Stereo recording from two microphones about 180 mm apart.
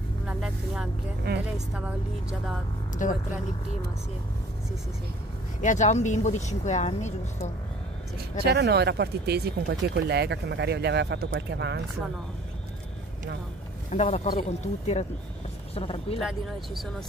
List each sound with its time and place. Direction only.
0.3 s vehicle: 5° right (ahead or behind)
1.3 s a woman's voice: 65° right (ahead or behind)
1.7 s speech: 5° right (ahead or behind)
3.0 s speech: 45° left (ahead or behind)
5.6 s speech: 45° left (ahead or behind)
8.5 s speech: 65° right (ahead or behind)
13.8 s speech: 40° left (ahead or behind)
16.2 s speech: centre (ahead or behind)